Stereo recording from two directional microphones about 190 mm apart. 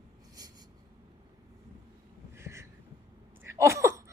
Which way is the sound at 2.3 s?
15° right (ahead or behind).